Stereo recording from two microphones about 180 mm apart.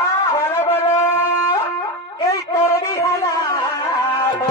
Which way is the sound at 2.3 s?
20° left (ahead or behind).